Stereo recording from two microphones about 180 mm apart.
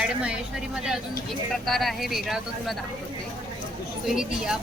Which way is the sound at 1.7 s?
Centre (ahead or behind).